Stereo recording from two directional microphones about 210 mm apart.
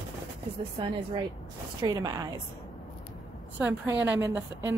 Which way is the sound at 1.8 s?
15° right (ahead or behind).